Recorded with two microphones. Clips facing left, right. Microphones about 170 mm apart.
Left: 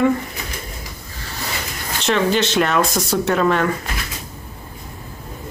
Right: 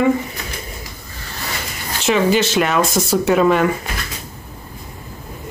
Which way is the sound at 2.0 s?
5° right (ahead or behind).